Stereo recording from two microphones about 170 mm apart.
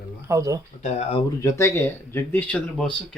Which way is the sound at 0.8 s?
40° left (ahead or behind).